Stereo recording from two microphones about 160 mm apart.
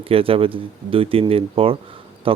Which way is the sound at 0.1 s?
35° right (ahead or behind).